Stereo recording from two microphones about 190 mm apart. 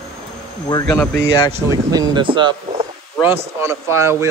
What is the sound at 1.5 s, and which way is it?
Speech, 20° right (ahead or behind).